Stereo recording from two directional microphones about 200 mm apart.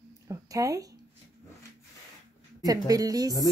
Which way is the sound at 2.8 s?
15° right (ahead or behind).